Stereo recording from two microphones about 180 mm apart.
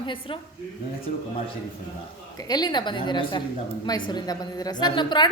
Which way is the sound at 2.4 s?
20° left (ahead or behind).